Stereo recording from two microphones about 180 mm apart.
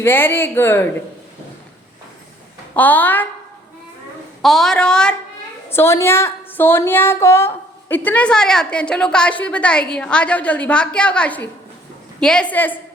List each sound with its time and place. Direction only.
0.0 s a woman's voice: 10° left (ahead or behind)
2.7 s a woman's voice: 10° left (ahead or behind)
4.4 s a woman's voice: centre (ahead or behind)